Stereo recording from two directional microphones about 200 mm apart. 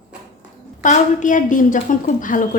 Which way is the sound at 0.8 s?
40° left (ahead or behind).